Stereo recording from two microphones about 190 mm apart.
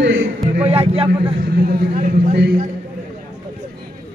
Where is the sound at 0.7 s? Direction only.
30° right (ahead or behind).